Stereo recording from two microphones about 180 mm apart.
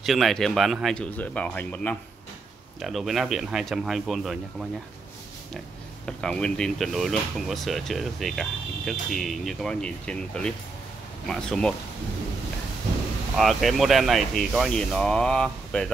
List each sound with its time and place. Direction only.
0.0 s speech: centre (ahead or behind)
6.0 s speech: 5° left (ahead or behind)
13.4 s speech: centre (ahead or behind)